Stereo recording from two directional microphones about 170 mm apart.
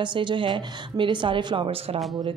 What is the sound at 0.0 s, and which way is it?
Speech, 25° right (ahead or behind).